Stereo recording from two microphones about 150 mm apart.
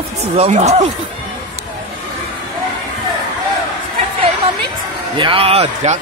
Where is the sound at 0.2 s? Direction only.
45° right (ahead or behind).